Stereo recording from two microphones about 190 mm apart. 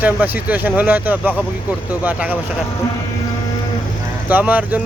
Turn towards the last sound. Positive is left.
turn(degrees=-10)  # may be behind; listen again after turning